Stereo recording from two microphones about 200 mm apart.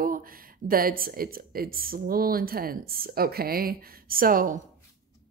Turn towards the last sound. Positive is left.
turn(degrees=-45)  # may be behind; listen again after turning